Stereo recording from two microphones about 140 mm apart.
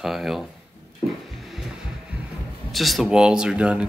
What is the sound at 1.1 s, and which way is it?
Music, centre (ahead or behind).